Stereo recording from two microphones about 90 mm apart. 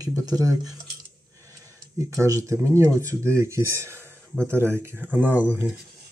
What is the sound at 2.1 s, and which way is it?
Speech, 35° right (ahead or behind).